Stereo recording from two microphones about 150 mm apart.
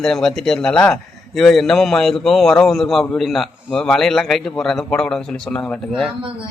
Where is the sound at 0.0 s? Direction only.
5° left (ahead or behind).